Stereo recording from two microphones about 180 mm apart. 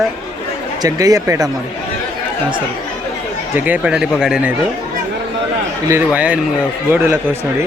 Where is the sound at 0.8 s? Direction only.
20° right (ahead or behind).